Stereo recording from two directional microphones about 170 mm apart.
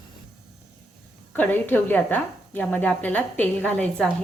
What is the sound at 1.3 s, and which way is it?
Speech, 10° left (ahead or behind).